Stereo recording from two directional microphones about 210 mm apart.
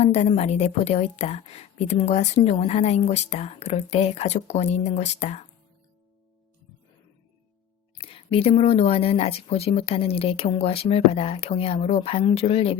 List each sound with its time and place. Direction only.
0.0 s a woman's voice: 30° left (ahead or behind)
7.9 s speech: 25° left (ahead or behind)